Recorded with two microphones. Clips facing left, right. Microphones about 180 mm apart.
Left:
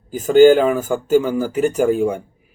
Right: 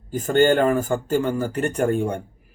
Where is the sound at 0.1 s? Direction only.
Centre (ahead or behind).